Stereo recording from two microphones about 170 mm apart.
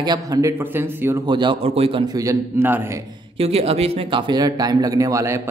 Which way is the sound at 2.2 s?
15° right (ahead or behind).